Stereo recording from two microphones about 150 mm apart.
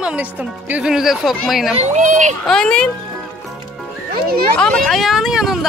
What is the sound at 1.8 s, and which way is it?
Speech, 50° right (ahead or behind).